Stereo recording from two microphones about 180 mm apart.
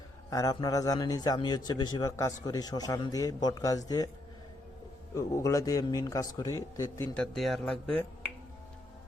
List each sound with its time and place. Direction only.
0.3 s a man's voice: 20° left (ahead or behind)
5.1 s a man's voice: 15° left (ahead or behind)
7.2 s speech: centre (ahead or behind)